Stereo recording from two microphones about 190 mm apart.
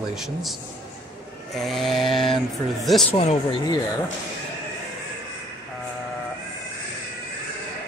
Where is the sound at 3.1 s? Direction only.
35° left (ahead or behind).